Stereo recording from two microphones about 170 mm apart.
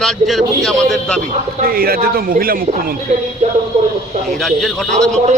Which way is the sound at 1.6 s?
60° right (ahead or behind).